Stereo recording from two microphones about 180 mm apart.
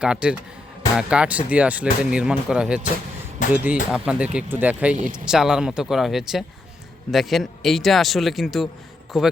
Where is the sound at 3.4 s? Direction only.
45° left (ahead or behind).